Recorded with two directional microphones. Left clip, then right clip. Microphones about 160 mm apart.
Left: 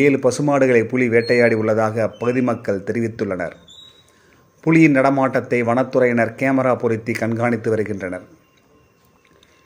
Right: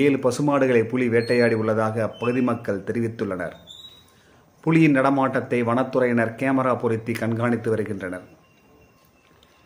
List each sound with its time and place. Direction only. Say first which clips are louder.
0.0 s a man's voice: left 4 dB; 25° left (ahead or behind)
4.6 s a man's voice: left 5 dB; 25° left (ahead or behind)